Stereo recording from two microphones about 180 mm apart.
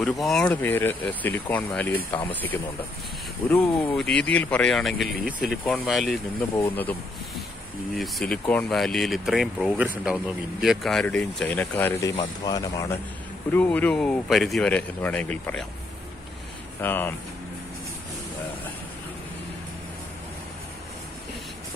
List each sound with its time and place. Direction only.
0.0 s speech: centre (ahead or behind)
6.5 s speech: 10° left (ahead or behind)
8.0 s speech: 5° left (ahead or behind); by 12.9 s 20° left (ahead or behind)
13.5 s speech: 10° left (ahead or behind)
16.8 s speech: 10° left (ahead or behind)